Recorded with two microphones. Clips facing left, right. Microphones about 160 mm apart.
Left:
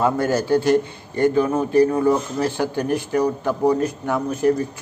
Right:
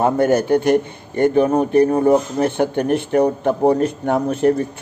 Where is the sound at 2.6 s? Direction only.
60° right (ahead or behind).